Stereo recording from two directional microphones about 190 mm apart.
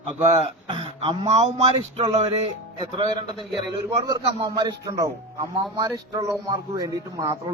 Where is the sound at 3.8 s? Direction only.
20° right (ahead or behind).